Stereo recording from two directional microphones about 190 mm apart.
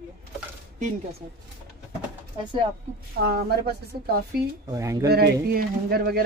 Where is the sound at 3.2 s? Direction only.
55° right (ahead or behind).